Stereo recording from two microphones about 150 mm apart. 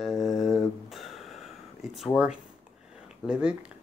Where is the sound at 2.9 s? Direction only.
5° right (ahead or behind).